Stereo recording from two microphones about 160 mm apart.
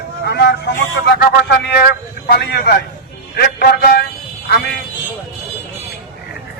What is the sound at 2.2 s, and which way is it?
A man's voice, 85° left.